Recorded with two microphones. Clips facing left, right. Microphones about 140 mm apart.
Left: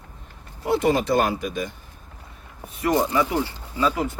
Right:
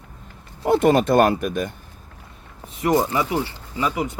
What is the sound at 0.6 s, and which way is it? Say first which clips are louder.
Speech: right 4 dB; 50° right (ahead or behind).